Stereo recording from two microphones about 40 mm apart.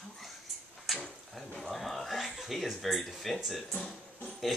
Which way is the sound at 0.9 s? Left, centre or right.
Centre.